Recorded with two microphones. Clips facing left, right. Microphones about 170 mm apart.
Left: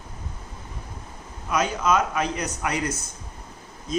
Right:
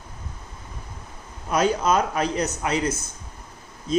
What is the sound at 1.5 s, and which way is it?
A man's voice, 35° right (ahead or behind).